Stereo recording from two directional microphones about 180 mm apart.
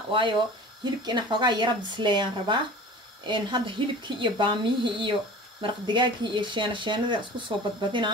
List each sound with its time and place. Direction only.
0.1 s speech: 30° right (ahead or behind)